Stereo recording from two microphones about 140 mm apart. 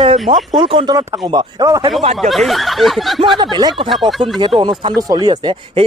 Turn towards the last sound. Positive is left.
turn(degrees=-35)  # may be behind; listen again after turning